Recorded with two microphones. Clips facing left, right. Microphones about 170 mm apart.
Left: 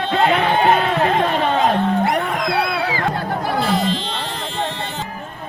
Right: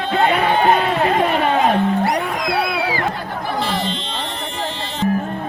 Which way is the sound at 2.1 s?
Centre (ahead or behind).